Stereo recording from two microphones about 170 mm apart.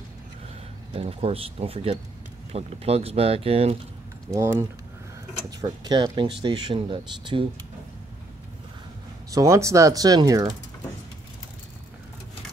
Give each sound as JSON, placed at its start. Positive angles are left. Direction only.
{"t": 0.9, "sound": "speech", "side_deg": -35}
{"t": 4.3, "sound": "speech", "side_deg": -15}
{"t": 9.3, "sound": "speech", "side_deg": -20}